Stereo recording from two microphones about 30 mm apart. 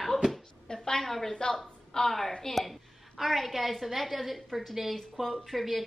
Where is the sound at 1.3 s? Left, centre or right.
Left.